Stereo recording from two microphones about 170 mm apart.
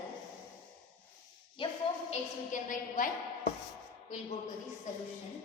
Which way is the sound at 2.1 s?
50° left (ahead or behind).